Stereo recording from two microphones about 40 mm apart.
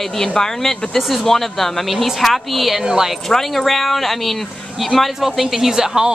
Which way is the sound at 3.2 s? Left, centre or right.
Centre.